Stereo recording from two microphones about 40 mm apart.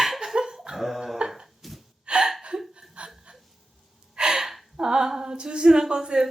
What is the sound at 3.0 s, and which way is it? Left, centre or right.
Chuckle, right.